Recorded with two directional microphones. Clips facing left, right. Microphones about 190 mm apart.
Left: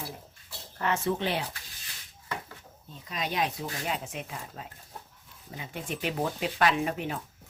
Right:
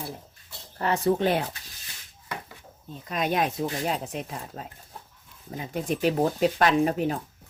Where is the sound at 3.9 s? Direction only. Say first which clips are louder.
Right 4 dB; 40° right (ahead or behind).